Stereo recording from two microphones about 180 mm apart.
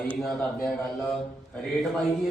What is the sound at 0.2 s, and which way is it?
Speech, 5° left (ahead or behind).